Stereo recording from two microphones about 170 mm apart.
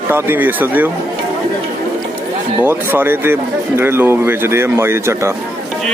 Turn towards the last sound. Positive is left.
turn(degrees=-15)  # may be behind; listen again after turning